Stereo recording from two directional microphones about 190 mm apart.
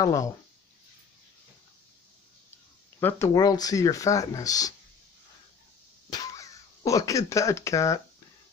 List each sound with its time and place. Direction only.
0.0 s speech: 15° left (ahead or behind)
3.0 s speech: 10° left (ahead or behind)
6.0 s speech: 20° left (ahead or behind)